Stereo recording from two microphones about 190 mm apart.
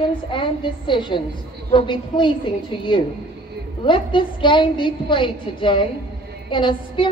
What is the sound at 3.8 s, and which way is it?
A woman's voice, 25° left (ahead or behind).